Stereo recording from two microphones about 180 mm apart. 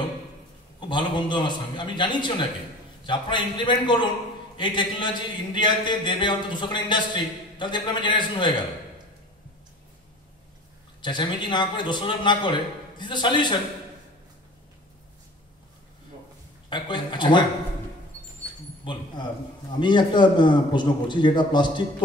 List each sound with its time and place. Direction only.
0.7 s a man's voice: 25° left (ahead or behind)
11.0 s a man's voice: 25° left (ahead or behind)
16.6 s a man's voice: 25° left (ahead or behind)
19.8 s a man's voice: 25° left (ahead or behind)